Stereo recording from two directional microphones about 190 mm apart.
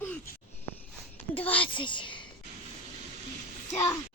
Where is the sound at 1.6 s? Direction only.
25° left (ahead or behind).